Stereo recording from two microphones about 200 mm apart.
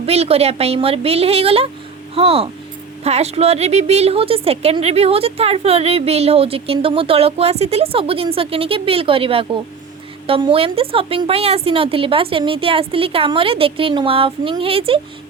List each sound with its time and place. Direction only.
0.0 s a woman's voice: 30° right (ahead or behind)